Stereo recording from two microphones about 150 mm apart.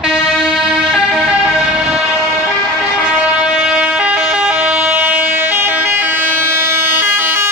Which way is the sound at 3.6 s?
5° right (ahead or behind).